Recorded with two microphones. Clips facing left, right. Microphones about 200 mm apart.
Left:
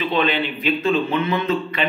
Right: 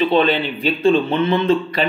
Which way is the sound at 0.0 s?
35° right (ahead or behind).